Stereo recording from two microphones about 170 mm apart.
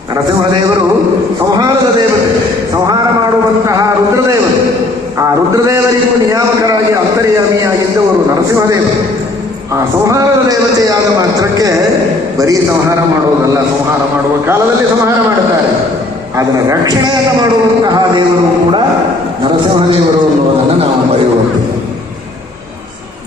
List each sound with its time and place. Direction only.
5.2 s a sound: 15° right (ahead or behind)
10.1 s a man's voice: 20° right (ahead or behind)
16.6 s a man's voice: 25° right (ahead or behind)